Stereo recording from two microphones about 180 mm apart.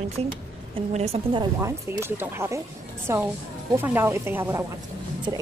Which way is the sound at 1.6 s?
15° right (ahead or behind).